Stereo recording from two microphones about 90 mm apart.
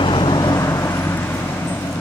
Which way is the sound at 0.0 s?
60° left (ahead or behind).